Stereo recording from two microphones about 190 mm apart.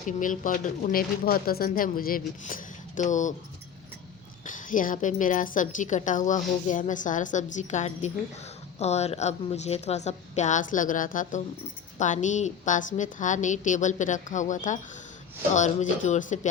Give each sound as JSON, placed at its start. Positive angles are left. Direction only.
{"t": 0.2, "sound": "speech", "side_deg": 45}
{"t": 4.4, "sound": "a woman's voice", "side_deg": 45}